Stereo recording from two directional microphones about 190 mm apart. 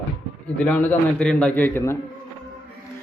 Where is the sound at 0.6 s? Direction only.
10° left (ahead or behind).